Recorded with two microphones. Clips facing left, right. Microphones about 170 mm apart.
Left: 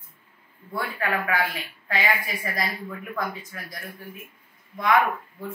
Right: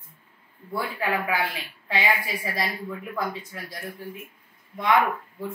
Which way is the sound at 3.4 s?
30° right (ahead or behind).